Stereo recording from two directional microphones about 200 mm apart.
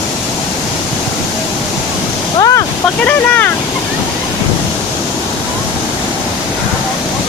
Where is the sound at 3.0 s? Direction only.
10° left (ahead or behind).